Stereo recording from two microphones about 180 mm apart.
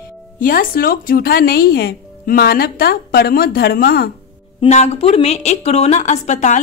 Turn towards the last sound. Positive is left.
turn(degrees=40)  # may be behind; listen again after turning